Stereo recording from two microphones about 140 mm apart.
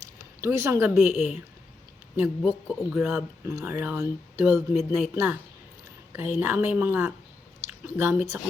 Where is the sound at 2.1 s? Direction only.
15° right (ahead or behind).